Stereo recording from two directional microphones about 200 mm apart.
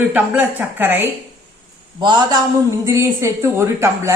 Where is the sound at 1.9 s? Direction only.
20° right (ahead or behind).